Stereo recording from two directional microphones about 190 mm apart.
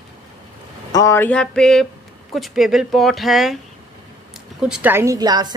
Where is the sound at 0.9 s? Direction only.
15° left (ahead or behind); by 3.6 s centre (ahead or behind).